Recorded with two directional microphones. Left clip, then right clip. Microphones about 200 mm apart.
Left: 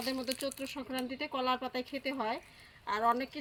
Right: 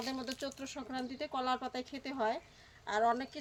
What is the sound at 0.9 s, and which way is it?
Speech, 5° right (ahead or behind).